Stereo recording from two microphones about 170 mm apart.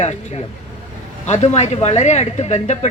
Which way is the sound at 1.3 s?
45° left (ahead or behind).